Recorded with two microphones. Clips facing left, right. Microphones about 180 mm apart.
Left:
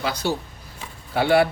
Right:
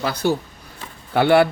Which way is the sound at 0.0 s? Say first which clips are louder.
Right 3 dB; 55° right (ahead or behind).